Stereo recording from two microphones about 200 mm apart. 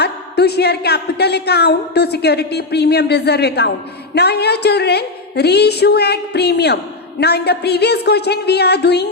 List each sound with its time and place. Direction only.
0.0 s a woman's voice: 55° left (ahead or behind)